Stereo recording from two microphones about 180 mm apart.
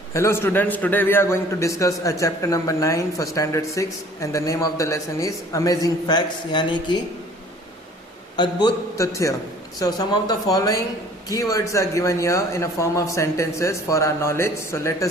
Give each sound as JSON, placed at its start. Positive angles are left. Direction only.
{"t": 0.1, "sound": "a man's voice", "side_deg": 15}
{"t": 8.4, "sound": "a man's voice", "side_deg": 25}